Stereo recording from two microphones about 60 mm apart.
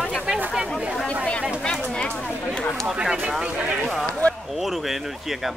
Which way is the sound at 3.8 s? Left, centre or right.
Centre.